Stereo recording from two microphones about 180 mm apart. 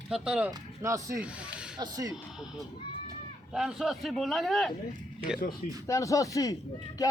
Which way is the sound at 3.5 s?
Centre (ahead or behind).